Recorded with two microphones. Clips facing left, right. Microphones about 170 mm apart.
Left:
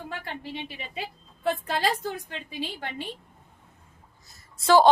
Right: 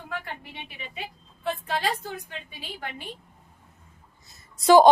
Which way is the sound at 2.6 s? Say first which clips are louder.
Left 5 dB; 30° left (ahead or behind).